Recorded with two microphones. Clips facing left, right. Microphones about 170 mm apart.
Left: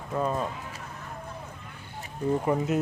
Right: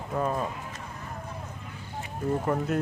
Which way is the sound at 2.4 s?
5° left (ahead or behind).